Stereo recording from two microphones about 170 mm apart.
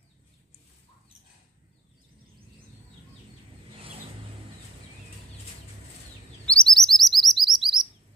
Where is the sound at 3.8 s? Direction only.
35° right (ahead or behind).